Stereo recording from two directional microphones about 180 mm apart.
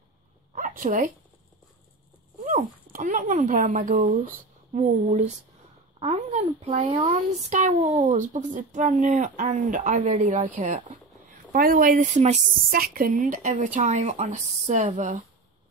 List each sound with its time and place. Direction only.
0.5 s a sound: 45° right (ahead or behind)
2.4 s speech: 40° right (ahead or behind)
12.7 s speech: 55° right (ahead or behind)